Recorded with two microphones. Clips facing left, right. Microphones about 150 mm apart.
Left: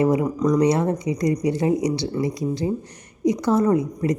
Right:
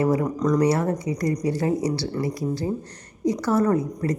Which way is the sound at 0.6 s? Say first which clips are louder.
Left 2 dB; 20° left (ahead or behind).